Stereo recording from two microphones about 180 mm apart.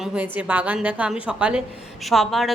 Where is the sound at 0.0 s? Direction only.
5° right (ahead or behind).